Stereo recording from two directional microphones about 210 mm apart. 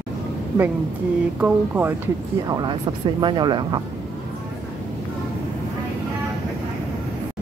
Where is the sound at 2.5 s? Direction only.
20° right (ahead or behind).